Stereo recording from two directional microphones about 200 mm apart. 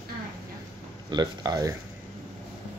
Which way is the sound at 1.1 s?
20° right (ahead or behind).